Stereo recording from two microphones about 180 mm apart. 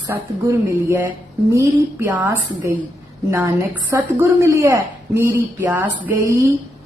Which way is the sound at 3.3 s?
15° right (ahead or behind).